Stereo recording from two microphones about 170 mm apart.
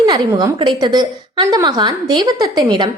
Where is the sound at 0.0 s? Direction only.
25° right (ahead or behind).